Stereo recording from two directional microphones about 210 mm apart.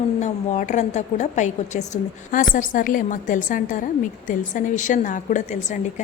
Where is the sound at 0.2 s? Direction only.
35° left (ahead or behind).